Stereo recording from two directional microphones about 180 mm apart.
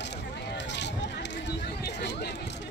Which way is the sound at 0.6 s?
75° left (ahead or behind).